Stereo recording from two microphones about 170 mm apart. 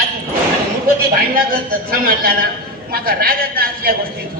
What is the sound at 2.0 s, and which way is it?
Speech, 60° right (ahead or behind).